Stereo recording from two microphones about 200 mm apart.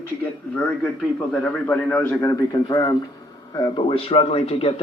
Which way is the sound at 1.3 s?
5° left (ahead or behind).